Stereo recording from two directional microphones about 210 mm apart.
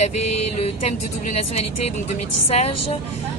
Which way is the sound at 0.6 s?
30° left (ahead or behind).